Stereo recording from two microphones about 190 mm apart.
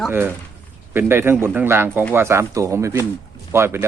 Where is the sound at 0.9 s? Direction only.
10° right (ahead or behind).